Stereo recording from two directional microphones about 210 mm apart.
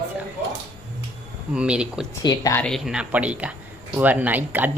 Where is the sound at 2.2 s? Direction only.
15° left (ahead or behind).